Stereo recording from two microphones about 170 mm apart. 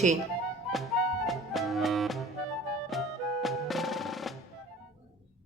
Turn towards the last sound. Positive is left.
turn(degrees=0)  # may be behind; listen again after turning